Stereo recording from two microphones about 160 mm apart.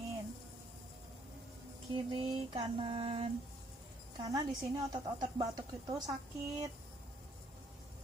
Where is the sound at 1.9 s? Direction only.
35° right (ahead or behind).